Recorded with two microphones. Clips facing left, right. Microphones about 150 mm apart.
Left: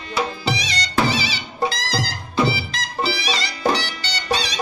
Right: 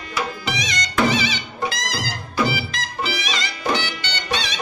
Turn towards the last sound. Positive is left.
turn(degrees=35)  # may be behind; listen again after turning